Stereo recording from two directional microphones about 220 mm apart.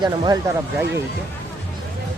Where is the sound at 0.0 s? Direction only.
20° right (ahead or behind).